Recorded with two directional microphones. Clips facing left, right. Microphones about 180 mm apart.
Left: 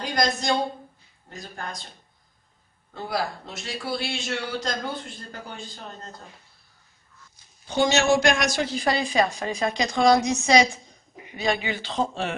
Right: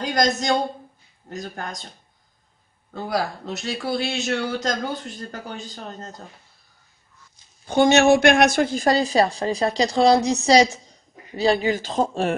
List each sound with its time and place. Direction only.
0.1 s speech: 45° right (ahead or behind)
2.9 s speech: 45° right (ahead or behind)
7.6 s a woman's voice: 55° right (ahead or behind)